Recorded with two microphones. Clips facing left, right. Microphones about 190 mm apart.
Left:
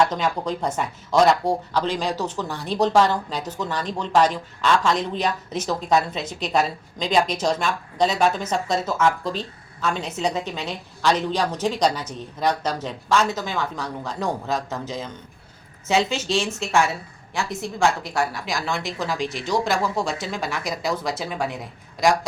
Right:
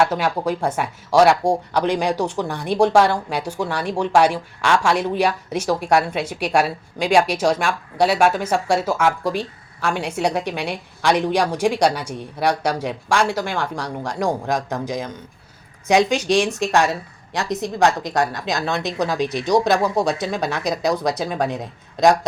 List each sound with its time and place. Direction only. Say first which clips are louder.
0.0 s speech: right 2 dB; 10° right (ahead or behind)